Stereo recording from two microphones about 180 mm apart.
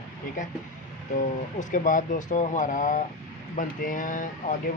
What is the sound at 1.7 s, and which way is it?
Speech, 45° left (ahead or behind).